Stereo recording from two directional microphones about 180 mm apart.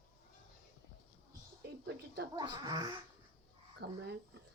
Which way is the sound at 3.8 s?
65° right (ahead or behind).